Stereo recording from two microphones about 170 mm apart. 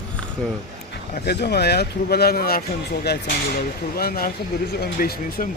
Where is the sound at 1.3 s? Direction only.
70° left (ahead or behind).